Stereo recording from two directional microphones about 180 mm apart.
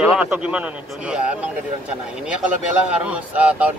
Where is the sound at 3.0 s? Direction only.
5° right (ahead or behind).